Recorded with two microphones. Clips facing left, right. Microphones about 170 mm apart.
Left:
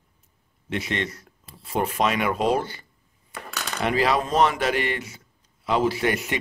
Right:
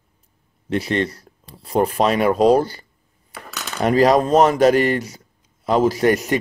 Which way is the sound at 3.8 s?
40° right (ahead or behind).